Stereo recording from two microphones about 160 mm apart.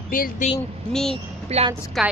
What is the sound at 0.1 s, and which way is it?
Speech, 60° left (ahead or behind).